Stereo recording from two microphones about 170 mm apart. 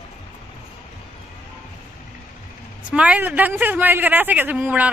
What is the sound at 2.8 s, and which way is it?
Speech, 10° right (ahead or behind).